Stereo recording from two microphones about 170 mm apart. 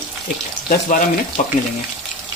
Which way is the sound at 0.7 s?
50° left (ahead or behind).